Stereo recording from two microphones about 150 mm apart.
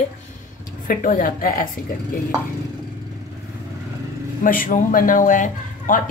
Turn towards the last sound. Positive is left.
turn(degrees=60)  # may be behind; listen again after turning